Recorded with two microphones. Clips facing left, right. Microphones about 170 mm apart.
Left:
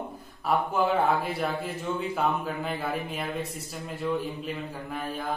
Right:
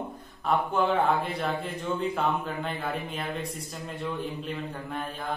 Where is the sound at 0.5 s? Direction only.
5° left (ahead or behind).